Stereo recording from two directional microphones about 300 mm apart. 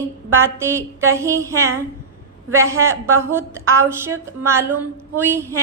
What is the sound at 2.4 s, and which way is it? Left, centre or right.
Speech, centre.